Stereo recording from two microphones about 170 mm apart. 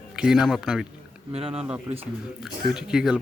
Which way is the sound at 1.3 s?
35° right (ahead or behind).